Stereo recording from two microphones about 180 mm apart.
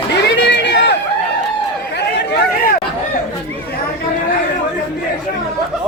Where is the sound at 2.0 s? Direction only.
65° left (ahead or behind).